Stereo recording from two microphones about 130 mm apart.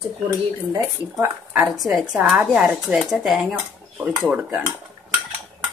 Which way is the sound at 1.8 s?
Centre (ahead or behind).